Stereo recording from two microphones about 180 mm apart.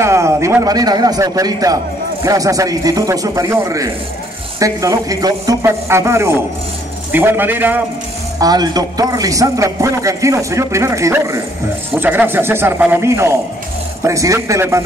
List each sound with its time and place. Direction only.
0.0 s a man's voice: 15° right (ahead or behind)
8.4 s a man's voice: 20° right (ahead or behind)